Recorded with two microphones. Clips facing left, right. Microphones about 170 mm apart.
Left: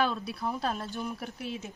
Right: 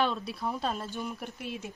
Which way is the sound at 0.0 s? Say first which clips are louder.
Even; centre (ahead or behind).